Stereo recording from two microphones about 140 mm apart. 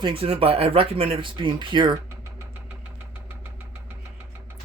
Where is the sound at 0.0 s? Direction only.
40° right (ahead or behind).